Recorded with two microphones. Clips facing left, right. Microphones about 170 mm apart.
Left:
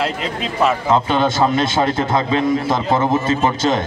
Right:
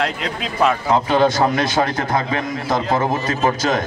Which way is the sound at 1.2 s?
25° left (ahead or behind).